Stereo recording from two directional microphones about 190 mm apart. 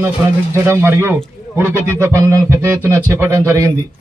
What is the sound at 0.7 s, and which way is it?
A man's voice, 15° right (ahead or behind).